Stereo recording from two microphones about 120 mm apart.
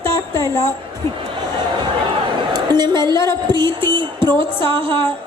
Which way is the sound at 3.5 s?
40° right (ahead or behind).